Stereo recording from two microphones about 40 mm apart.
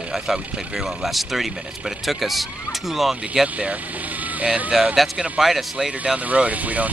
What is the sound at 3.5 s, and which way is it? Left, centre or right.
Speech, right.